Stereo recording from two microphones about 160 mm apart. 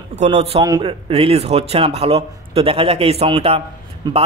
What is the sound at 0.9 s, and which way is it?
A man's voice, 35° right (ahead or behind).